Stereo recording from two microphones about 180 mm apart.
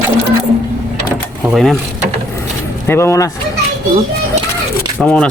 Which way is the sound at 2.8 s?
15° left (ahead or behind).